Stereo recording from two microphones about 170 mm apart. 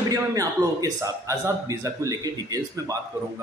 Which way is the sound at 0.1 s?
20° right (ahead or behind).